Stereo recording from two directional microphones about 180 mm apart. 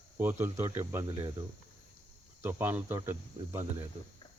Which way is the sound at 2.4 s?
10° right (ahead or behind).